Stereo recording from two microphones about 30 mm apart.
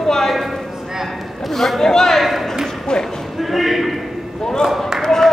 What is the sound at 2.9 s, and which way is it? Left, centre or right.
Speech, left.